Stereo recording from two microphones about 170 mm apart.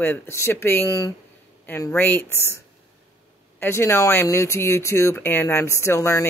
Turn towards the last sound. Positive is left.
turn(degrees=15)  # may be behind; listen again after turning